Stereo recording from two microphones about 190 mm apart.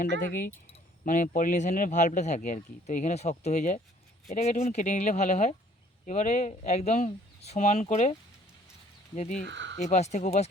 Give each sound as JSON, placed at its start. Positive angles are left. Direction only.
{"t": 1.0, "sound": "speech", "side_deg": 45}
{"t": 9.1, "sound": "speech", "side_deg": 40}
{"t": 9.5, "sound": "speech", "side_deg": -70}
{"t": 9.7, "sound": "speech", "side_deg": 40}